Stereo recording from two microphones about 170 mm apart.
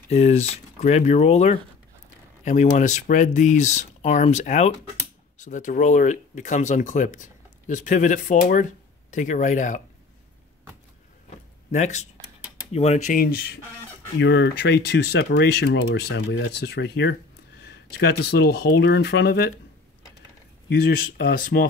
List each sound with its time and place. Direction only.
0.1 s speech: 40° left (ahead or behind)
11.7 s speech: 45° left (ahead or behind)
13.2 s speech: 65° left (ahead or behind)
14.1 s speech: 90° left; by 19.5 s 70° left (ahead or behind)
20.7 s speech: 65° left (ahead or behind)